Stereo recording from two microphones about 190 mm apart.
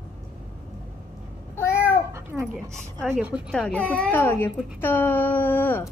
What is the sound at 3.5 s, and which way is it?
A child's voice, 5° left (ahead or behind).